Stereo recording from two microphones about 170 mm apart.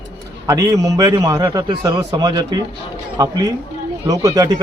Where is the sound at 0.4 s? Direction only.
20° right (ahead or behind).